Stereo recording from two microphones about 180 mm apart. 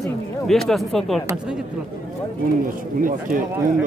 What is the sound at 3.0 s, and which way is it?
Speech, 50° right (ahead or behind).